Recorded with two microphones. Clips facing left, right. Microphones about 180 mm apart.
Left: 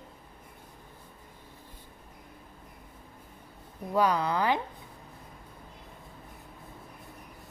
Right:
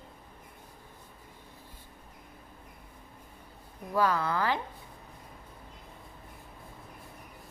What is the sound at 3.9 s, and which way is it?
Speech, 20° left (ahead or behind).